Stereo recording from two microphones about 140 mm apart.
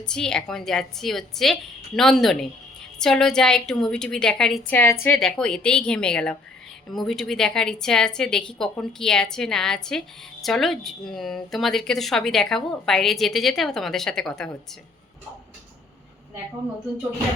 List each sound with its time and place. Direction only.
0.0 s speech: 5° left (ahead or behind)
4.8 s a woman's voice: 20° left (ahead or behind)
5.1 s a woman's voice: 5° left (ahead or behind)